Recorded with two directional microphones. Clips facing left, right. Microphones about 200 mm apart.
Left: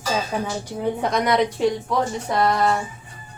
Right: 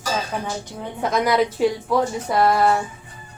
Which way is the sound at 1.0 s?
Centre (ahead or behind).